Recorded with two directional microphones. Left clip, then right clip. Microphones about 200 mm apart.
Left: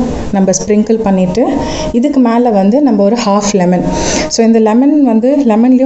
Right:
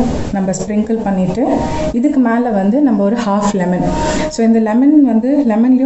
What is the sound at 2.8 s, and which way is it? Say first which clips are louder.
A woman's voice: left 4 dB; 25° left (ahead or behind).